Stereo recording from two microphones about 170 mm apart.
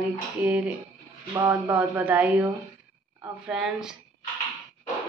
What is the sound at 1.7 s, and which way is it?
A woman's voice, 10° right (ahead or behind).